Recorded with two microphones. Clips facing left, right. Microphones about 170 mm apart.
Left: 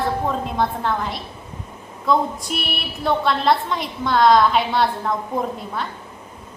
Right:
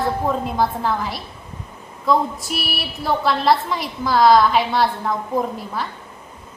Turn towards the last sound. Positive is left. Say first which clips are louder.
# right 1 dB
turn(degrees=0)  # may be behind; listen again after turning